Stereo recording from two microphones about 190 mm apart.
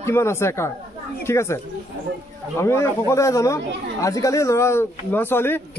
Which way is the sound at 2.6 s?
15° left (ahead or behind).